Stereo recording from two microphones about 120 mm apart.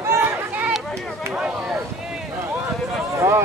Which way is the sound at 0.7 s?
5° left (ahead or behind).